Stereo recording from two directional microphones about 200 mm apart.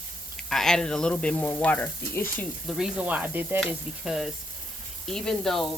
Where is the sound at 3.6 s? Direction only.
Centre (ahead or behind).